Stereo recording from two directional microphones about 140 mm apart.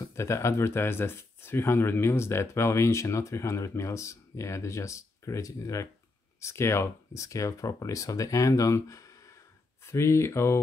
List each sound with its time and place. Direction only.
0.0 s speech: 20° left (ahead or behind)